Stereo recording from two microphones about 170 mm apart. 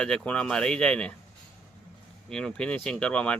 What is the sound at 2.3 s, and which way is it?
Speech, 5° left (ahead or behind).